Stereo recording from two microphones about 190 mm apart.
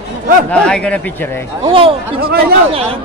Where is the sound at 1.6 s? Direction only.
30° right (ahead or behind).